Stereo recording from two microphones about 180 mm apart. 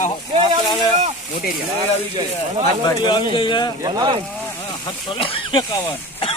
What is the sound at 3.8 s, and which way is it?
Speech, 20° right (ahead or behind).